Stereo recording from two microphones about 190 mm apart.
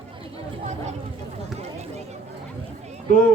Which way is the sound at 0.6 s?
35° right (ahead or behind).